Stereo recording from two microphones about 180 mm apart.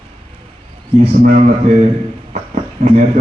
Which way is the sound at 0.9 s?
45° right (ahead or behind).